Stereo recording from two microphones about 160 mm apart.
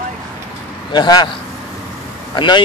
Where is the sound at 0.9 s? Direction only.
25° left (ahead or behind).